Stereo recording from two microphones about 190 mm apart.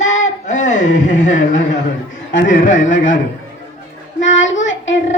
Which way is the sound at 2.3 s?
80° left.